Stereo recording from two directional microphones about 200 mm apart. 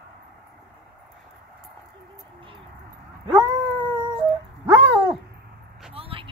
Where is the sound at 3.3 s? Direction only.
5° right (ahead or behind).